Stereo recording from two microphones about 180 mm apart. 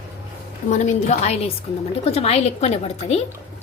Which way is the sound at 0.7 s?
40° left (ahead or behind).